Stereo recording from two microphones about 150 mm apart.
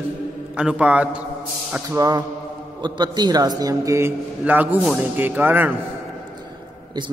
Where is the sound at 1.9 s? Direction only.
25° right (ahead or behind).